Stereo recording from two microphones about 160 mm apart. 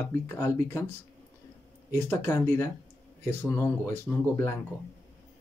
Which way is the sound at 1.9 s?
15° left (ahead or behind).